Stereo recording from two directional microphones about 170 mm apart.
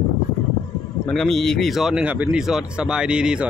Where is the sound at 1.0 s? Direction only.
5° left (ahead or behind).